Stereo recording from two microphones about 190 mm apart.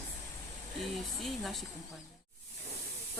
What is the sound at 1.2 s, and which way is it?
Speech, centre (ahead or behind).